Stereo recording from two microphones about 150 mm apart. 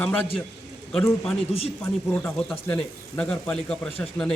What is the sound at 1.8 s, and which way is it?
Speech, 15° left (ahead or behind).